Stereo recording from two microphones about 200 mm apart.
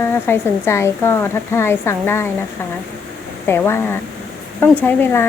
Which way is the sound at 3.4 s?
10° left (ahead or behind).